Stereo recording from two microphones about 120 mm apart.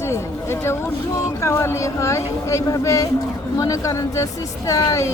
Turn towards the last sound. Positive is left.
turn(degrees=25)  # may be behind; listen again after turning